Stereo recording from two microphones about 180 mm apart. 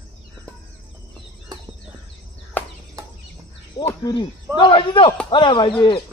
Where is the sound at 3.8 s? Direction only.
25° left (ahead or behind).